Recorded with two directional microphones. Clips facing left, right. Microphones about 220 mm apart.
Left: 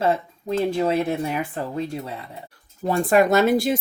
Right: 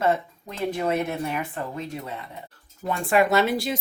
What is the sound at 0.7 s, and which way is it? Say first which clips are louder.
Speech: even; 30° left (ahead or behind).